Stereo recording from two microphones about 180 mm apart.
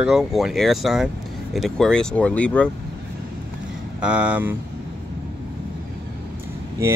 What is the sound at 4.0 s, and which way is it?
Speech, 5° right (ahead or behind).